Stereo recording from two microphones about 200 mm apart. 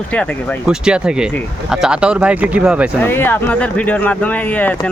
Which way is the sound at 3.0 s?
10° left (ahead or behind).